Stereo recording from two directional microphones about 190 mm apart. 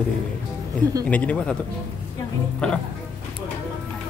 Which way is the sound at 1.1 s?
5° left (ahead or behind).